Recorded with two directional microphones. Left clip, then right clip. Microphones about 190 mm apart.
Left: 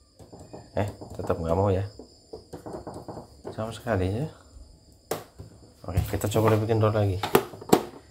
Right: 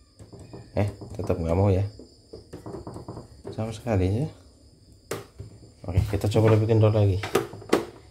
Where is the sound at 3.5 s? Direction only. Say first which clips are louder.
Even; 20° right (ahead or behind).